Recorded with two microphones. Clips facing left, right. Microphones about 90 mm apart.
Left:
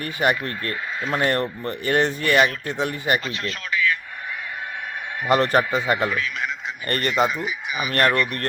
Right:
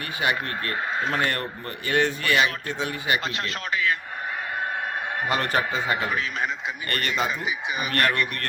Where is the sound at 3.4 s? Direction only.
40° right (ahead or behind).